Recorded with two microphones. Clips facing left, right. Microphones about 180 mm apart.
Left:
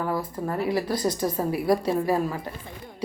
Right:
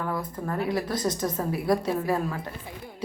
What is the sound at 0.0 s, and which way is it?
Speech, 5° left (ahead or behind).